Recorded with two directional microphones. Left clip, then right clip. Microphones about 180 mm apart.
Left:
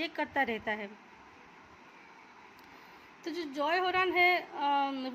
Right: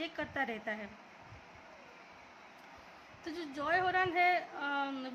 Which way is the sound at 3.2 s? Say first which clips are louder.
Left 6 dB; 20° left (ahead or behind).